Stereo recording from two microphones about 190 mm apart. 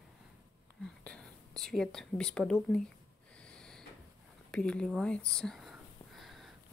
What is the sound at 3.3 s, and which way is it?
Snort, 5° left (ahead or behind).